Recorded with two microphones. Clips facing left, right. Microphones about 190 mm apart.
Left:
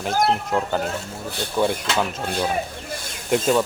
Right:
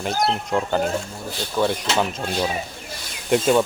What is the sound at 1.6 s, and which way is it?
Speech, 15° left (ahead or behind).